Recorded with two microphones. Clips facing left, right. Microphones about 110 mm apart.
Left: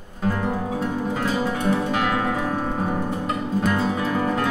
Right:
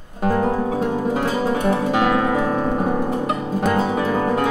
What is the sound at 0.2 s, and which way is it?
Music, 45° right (ahead or behind).